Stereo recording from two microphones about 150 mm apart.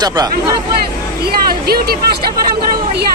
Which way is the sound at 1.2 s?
90° right.